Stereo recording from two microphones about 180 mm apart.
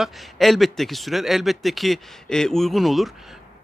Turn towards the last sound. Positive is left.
turn(degrees=0)  # may be behind; listen again after turning